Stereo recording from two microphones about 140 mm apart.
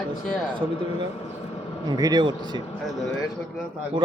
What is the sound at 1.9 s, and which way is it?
Speech, 30° right (ahead or behind).